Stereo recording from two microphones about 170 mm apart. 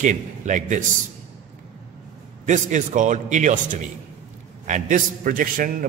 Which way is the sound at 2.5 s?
45° right (ahead or behind).